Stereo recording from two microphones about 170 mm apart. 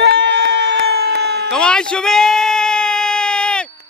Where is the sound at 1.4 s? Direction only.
5° left (ahead or behind).